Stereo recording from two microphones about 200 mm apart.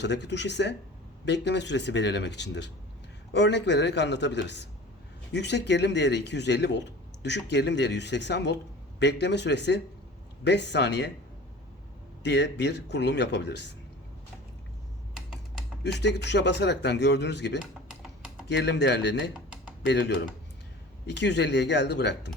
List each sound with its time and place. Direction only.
0.0 s speech: 60° left (ahead or behind)
12.2 s speech: 60° left (ahead or behind)
15.8 s speech: 60° left (ahead or behind)